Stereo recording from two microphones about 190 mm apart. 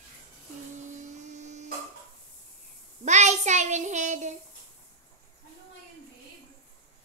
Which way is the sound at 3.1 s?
40° right (ahead or behind).